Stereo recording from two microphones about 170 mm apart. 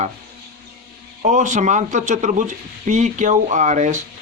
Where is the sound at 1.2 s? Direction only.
45° right (ahead or behind).